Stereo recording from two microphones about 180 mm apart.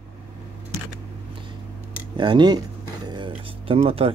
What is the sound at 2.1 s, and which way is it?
Speech, 25° right (ahead or behind).